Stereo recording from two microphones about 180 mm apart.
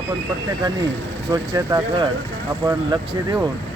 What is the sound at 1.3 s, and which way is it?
A man's voice, 15° right (ahead or behind).